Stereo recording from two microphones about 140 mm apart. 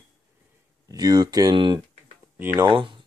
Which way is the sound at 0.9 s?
25° right (ahead or behind).